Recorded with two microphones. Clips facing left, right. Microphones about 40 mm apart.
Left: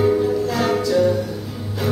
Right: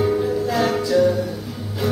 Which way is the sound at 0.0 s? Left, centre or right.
Centre.